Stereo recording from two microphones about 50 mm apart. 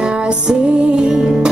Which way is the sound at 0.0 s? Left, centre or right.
Centre.